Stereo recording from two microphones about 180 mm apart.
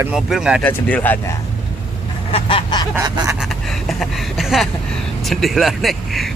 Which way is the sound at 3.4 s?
Centre (ahead or behind).